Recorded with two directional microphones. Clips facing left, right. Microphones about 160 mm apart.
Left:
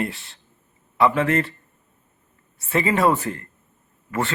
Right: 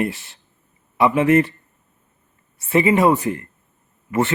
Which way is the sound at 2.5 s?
20° right (ahead or behind).